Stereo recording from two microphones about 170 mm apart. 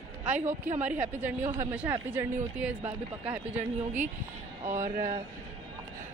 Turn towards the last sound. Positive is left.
turn(degrees=-50)  # may be behind; listen again after turning